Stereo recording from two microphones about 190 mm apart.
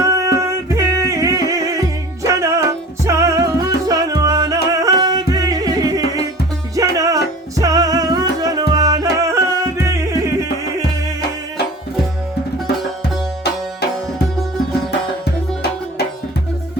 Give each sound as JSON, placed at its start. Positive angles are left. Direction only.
{"t": 0.0, "sound": "music", "side_deg": -15}